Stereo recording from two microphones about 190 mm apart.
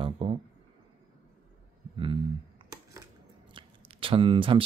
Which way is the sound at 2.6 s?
30° right (ahead or behind).